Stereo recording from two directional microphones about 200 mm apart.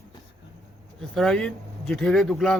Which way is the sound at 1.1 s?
Centre (ahead or behind).